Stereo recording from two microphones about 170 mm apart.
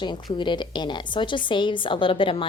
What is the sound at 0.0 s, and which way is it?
A woman's voice, 25° left (ahead or behind).